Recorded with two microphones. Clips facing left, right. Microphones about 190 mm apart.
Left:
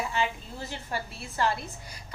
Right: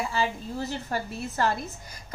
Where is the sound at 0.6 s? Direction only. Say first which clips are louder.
Right 4 dB; 40° right (ahead or behind).